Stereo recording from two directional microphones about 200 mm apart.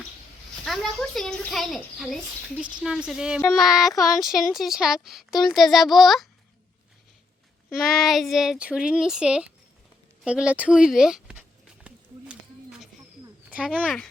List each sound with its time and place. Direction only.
0.6 s speech: centre (ahead or behind)
7.9 s speech: centre (ahead or behind)
10.2 s a sound: 5° right (ahead or behind)
13.5 s speech: 5° right (ahead or behind)